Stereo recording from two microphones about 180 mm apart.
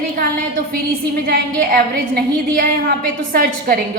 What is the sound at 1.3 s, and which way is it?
A woman's voice, 60° right (ahead or behind).